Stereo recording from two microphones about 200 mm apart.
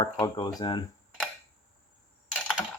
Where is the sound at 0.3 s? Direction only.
20° left (ahead or behind).